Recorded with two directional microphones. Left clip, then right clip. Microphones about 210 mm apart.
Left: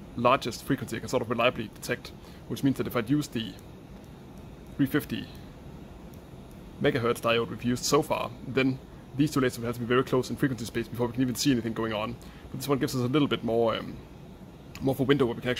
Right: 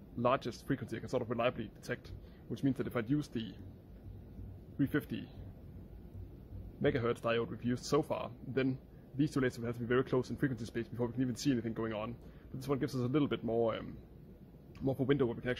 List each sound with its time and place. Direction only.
0.2 s speech: 5° right (ahead or behind)
4.7 s speech: 10° right (ahead or behind)
6.8 s speech: 10° right (ahead or behind)
14.9 s speech: 5° right (ahead or behind)